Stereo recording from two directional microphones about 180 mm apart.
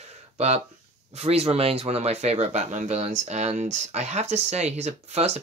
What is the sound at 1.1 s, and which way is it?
Speech, 35° right (ahead or behind).